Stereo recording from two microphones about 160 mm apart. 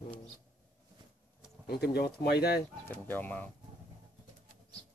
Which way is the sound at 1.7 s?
90° left.